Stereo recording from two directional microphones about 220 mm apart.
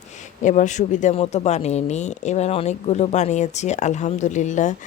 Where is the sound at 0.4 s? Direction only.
35° left (ahead or behind).